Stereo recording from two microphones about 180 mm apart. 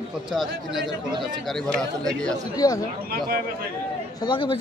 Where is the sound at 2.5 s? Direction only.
20° left (ahead or behind).